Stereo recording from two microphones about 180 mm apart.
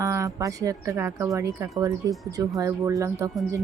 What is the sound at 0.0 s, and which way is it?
Speech, 15° right (ahead or behind).